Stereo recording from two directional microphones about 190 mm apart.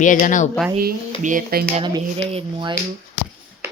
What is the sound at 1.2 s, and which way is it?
Speech, 45° right (ahead or behind).